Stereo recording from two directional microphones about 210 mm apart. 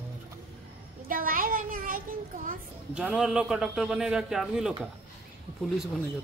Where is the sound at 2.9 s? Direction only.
5° right (ahead or behind).